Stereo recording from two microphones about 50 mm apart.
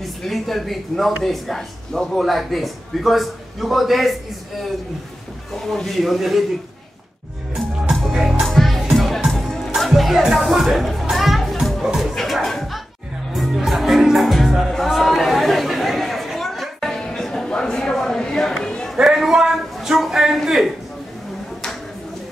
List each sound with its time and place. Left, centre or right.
0.0 s speech: centre
5.5 s speech: centre
8.1 s music: centre
8.5 s music: centre
11.8 s music: centre
12.1 s music: centre
14.9 s chatter: centre
16.9 s music: centre
17.5 s a sound: centre
19.0 s a sound: centre